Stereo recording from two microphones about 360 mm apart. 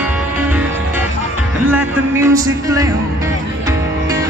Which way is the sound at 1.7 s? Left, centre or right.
Centre.